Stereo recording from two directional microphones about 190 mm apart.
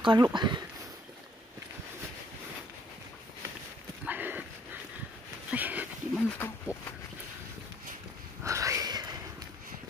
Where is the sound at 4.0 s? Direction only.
10° right (ahead or behind).